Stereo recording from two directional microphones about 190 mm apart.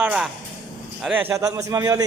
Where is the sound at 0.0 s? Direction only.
5° right (ahead or behind).